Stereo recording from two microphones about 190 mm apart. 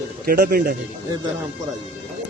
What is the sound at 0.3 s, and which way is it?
Speech, 50° right (ahead or behind).